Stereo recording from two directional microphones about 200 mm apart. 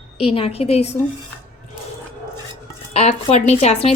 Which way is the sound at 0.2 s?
30° left (ahead or behind).